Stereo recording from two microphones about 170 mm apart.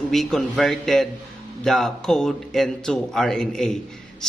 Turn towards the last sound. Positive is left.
turn(degrees=5)  # may be behind; listen again after turning